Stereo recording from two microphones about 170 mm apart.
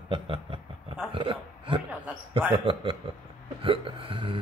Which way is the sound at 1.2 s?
30° right (ahead or behind).